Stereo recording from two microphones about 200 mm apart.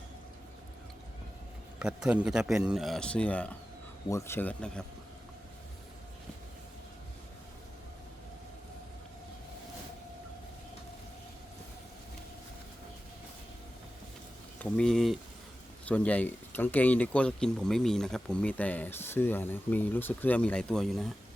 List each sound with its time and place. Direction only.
1.8 s a man's voice: 5° right (ahead or behind)
14.6 s a man's voice: 5° left (ahead or behind)